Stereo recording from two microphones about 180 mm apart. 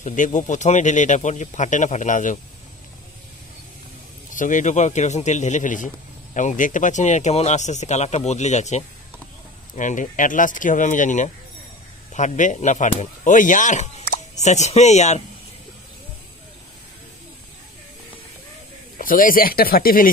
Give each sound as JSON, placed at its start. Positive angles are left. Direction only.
{"t": 0.0, "sound": "speech", "side_deg": 45}
{"t": 4.3, "sound": "speech", "side_deg": 45}
{"t": 18.9, "sound": "speech", "side_deg": 50}